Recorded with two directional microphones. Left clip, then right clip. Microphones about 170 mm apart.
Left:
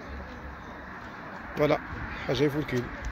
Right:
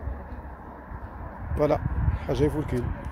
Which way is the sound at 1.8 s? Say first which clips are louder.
Even; 55° right (ahead or behind).